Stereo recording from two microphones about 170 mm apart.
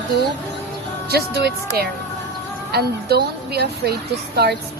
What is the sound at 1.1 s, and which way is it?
A woman's voice, 70° right (ahead or behind).